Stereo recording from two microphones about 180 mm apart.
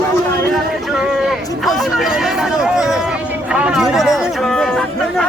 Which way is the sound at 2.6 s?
5° right (ahead or behind).